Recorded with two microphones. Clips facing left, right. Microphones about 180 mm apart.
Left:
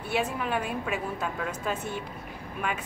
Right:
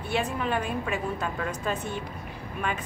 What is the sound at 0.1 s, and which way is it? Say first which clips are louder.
A woman's voice: right 1 dB; 5° left (ahead or behind).